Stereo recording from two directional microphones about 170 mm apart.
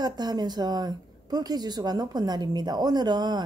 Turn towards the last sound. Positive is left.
turn(degrees=-25)  # may be behind; listen again after turning